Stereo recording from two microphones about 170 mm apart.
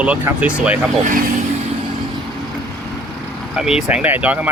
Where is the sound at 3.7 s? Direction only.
5° right (ahead or behind).